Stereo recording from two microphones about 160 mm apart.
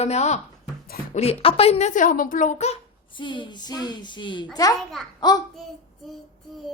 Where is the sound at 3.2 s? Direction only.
30° left (ahead or behind).